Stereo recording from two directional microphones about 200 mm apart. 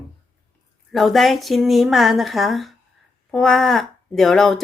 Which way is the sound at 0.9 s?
Centre (ahead or behind).